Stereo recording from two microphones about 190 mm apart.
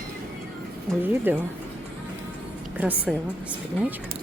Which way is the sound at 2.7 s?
5° right (ahead or behind).